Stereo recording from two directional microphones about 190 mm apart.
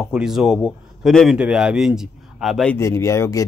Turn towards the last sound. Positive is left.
turn(degrees=15)  # may be behind; listen again after turning